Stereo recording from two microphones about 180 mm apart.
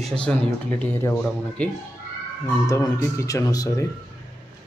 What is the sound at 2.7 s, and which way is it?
Speech, 15° left (ahead or behind).